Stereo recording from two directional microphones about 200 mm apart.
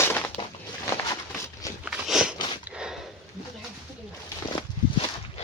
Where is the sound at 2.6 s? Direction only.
5° right (ahead or behind).